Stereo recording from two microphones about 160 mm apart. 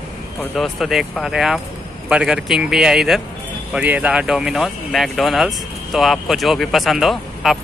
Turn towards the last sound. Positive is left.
turn(degrees=0)  # may be behind; listen again after turning